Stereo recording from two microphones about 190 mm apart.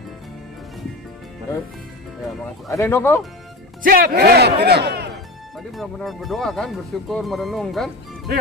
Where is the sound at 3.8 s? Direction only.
50° right (ahead or behind).